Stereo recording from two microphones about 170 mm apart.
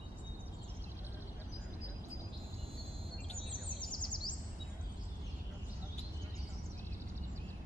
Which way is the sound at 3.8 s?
25° left (ahead or behind).